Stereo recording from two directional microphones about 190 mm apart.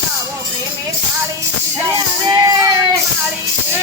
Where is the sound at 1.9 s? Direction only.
20° right (ahead or behind).